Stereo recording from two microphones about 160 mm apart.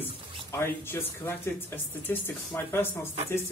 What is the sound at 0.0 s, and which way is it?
Speech, 15° left (ahead or behind).